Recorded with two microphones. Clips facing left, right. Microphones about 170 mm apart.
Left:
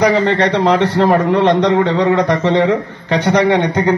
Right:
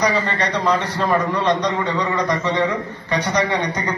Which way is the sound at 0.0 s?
85° left.